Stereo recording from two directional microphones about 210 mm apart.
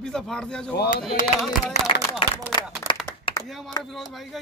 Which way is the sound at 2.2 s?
25° left (ahead or behind).